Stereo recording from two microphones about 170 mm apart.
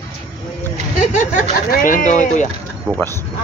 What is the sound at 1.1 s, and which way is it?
Speech, 45° left (ahead or behind).